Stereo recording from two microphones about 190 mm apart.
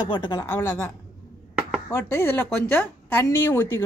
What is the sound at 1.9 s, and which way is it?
A woman's voice, 15° left (ahead or behind).